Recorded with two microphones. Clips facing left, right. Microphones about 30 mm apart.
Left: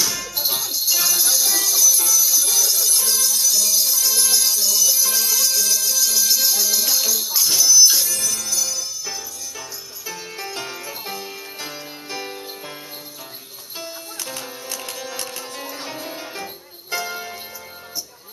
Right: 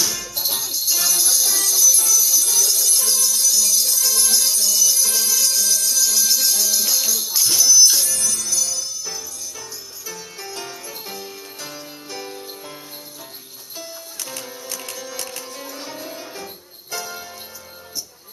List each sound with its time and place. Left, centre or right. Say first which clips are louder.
0.0 s music: left 1 dB; centre; by 12.4 s left
14.2 s music: left 1 dB; centre
15.5 s music: left 2 dB; left